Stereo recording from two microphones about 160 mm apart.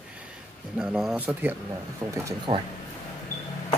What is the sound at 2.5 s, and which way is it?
Speech, 30° right (ahead or behind).